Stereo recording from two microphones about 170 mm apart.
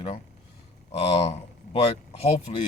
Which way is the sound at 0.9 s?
35° left (ahead or behind).